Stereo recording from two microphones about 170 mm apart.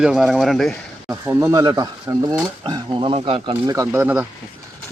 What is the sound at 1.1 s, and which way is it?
Speech, 15° right (ahead or behind).